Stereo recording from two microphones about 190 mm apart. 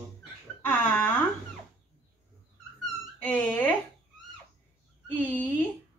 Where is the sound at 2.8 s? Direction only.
10° left (ahead or behind).